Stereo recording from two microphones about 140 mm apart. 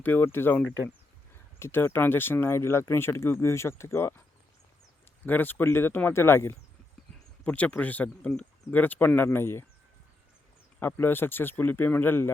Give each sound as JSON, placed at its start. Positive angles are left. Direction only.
{"t": 0.0, "sound": "speech", "side_deg": 15}
{"t": 5.2, "sound": "speech", "side_deg": 15}
{"t": 10.8, "sound": "speech", "side_deg": 15}